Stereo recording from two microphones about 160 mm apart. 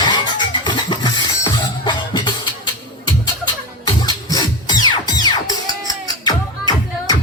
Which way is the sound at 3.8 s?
25° left (ahead or behind).